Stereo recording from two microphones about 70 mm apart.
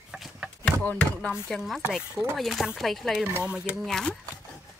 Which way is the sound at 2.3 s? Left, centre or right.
Centre.